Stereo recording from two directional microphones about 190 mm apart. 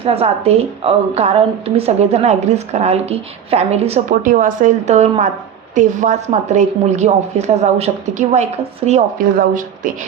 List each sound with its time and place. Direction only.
0.0 s a woman's voice: 30° right (ahead or behind)
4.1 s a woman's voice: 45° right (ahead or behind)
8.9 s speech: 45° right (ahead or behind)